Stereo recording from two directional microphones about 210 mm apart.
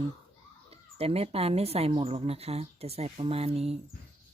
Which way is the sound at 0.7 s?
30° right (ahead or behind).